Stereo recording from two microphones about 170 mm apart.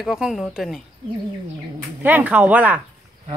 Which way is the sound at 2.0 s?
10° right (ahead or behind).